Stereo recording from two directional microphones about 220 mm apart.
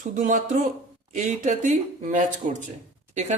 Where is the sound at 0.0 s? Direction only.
35° right (ahead or behind).